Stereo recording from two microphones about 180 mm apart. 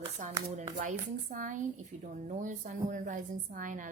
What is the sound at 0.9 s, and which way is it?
A woman's voice, 45° right (ahead or behind).